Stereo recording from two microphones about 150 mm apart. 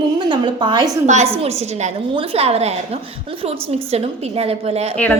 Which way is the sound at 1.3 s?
40° right (ahead or behind).